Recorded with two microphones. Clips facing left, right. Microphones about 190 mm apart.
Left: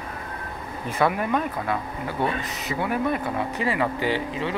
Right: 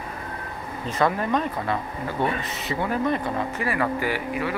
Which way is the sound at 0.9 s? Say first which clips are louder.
Even; 10° left (ahead or behind).